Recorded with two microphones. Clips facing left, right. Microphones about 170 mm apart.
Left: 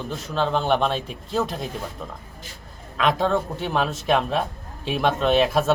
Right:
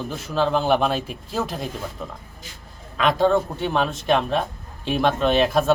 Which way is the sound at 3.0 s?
Centre (ahead or behind).